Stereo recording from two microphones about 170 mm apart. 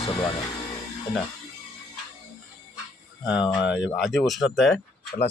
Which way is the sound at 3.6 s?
5° right (ahead or behind).